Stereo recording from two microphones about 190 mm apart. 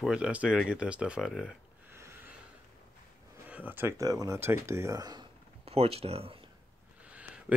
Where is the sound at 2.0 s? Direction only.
15° right (ahead or behind).